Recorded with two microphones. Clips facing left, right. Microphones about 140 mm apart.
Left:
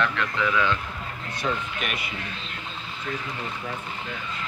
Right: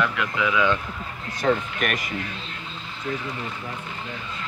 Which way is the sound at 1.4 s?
45° right (ahead or behind).